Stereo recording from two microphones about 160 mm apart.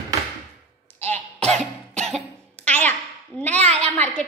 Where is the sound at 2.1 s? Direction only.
45° right (ahead or behind).